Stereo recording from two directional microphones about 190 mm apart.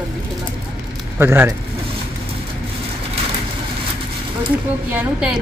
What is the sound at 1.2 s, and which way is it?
Speech, 10° right (ahead or behind).